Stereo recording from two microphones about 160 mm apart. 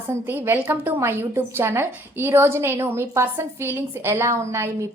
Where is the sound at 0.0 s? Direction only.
15° right (ahead or behind).